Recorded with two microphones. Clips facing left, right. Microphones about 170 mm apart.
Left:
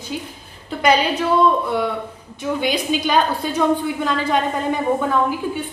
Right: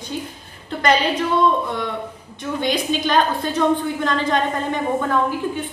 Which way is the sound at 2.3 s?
10° left (ahead or behind).